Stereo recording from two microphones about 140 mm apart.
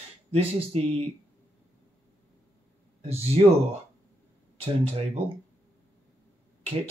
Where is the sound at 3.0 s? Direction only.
45° right (ahead or behind).